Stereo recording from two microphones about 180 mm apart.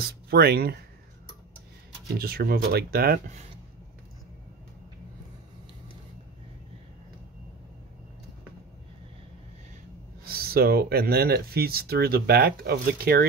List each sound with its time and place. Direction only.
0.0 s speech: 60° right (ahead or behind)
2.1 s speech: 55° right (ahead or behind)
10.2 s speech: 55° right (ahead or behind)